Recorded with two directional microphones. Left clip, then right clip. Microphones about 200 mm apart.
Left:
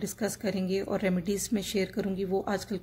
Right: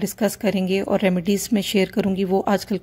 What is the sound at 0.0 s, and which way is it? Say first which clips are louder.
A woman's voice: right 10 dB; 35° right (ahead or behind).